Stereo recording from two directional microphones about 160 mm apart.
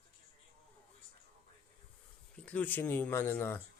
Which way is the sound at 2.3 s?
10° left (ahead or behind).